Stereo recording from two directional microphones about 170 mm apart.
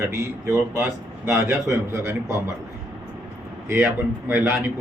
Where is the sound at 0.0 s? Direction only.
15° right (ahead or behind).